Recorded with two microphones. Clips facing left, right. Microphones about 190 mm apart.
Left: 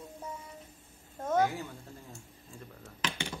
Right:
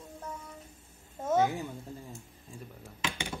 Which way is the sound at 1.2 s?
10° right (ahead or behind).